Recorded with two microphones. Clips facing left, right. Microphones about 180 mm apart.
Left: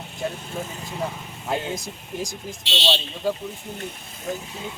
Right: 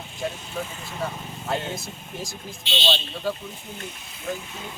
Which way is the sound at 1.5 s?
15° left (ahead or behind).